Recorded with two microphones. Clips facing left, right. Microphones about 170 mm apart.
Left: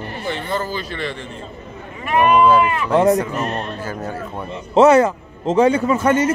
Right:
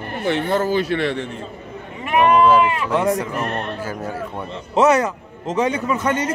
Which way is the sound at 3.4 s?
20° left (ahead or behind).